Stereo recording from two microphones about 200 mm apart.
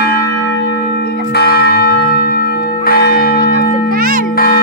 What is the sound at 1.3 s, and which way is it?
Church bell, 55° left (ahead or behind).